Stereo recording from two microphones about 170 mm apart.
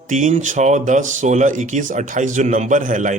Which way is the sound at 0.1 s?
45° right (ahead or behind).